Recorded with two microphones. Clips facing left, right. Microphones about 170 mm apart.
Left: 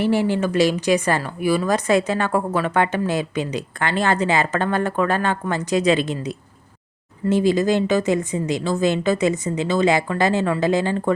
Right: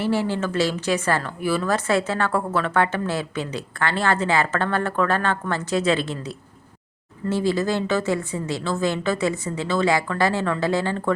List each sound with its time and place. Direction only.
0.0 s speech: 15° left (ahead or behind)